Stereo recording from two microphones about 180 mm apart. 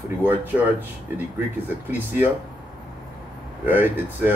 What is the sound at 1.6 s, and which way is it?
Speech, 10° right (ahead or behind).